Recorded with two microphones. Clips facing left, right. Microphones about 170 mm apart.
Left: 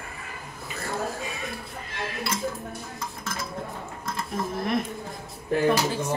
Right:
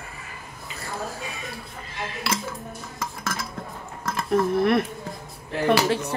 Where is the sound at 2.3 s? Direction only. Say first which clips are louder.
Right 5 dB; 90° right.